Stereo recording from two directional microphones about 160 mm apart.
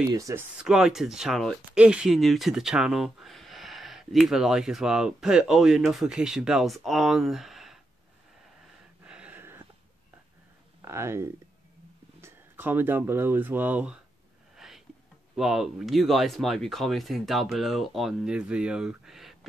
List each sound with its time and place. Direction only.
0.1 s speech: 20° right (ahead or behind)
0.6 s speech: 5° right (ahead or behind)
9.0 s a sound: 5° right (ahead or behind)
10.8 s speech: 15° right (ahead or behind)
14.6 s a sound: centre (ahead or behind)
15.3 s speech: centre (ahead or behind)